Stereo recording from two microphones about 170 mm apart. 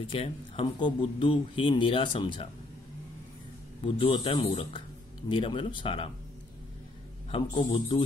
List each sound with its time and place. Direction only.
0.0 s speech: 35° left (ahead or behind)
3.8 s speech: 30° left (ahead or behind)
7.2 s speech: 30° left (ahead or behind)